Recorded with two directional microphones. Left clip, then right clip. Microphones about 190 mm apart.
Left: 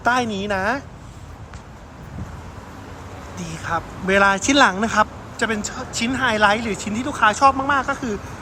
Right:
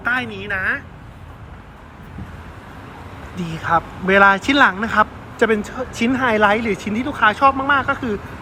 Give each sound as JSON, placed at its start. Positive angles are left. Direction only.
{"t": 0.0, "sound": "a woman's voice", "side_deg": 20}
{"t": 3.3, "sound": "speech", "side_deg": -5}